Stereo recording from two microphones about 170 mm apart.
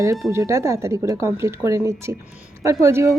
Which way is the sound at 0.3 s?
15° right (ahead or behind).